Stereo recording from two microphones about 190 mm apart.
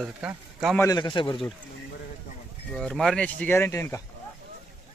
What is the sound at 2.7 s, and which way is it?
Speech, 5° left (ahead or behind).